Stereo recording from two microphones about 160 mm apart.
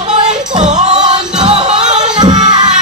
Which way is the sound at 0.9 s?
25° right (ahead or behind).